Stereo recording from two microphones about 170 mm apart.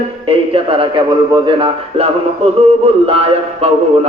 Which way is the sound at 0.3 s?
30° right (ahead or behind).